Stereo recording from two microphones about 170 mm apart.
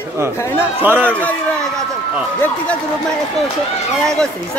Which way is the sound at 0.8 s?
10° right (ahead or behind).